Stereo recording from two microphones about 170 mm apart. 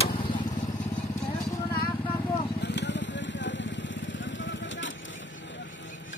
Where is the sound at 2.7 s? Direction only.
90° left.